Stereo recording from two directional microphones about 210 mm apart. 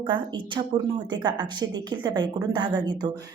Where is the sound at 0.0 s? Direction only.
20° right (ahead or behind).